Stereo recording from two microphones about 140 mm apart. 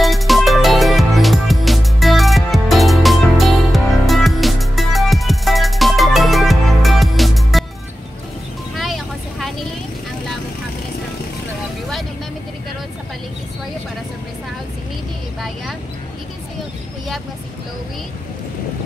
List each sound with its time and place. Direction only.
0.0 s music: centre (ahead or behind)
8.7 s vehicle: centre (ahead or behind)